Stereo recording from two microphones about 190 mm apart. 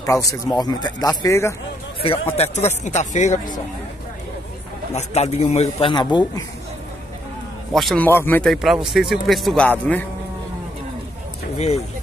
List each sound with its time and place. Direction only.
0.0 s speech: 15° left (ahead or behind)
2.3 s speech: 35° left (ahead or behind)
4.9 s speech: 35° left (ahead or behind)
7.7 s speech: 5° left (ahead or behind)
8.5 s a man's voice: centre (ahead or behind)
11.5 s speech: 35° left (ahead or behind)